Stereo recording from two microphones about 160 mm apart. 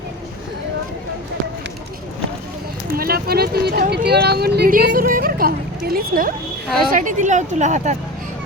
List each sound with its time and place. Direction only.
2.9 s speech: 70° right (ahead or behind)
6.9 s speech: 55° right (ahead or behind)